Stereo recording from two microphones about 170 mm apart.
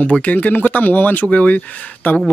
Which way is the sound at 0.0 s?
10° left (ahead or behind).